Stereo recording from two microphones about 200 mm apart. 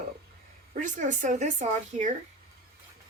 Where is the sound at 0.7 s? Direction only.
40° right (ahead or behind).